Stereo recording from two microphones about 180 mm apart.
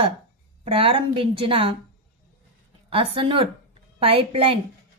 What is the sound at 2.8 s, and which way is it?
A woman's voice, 30° right (ahead or behind).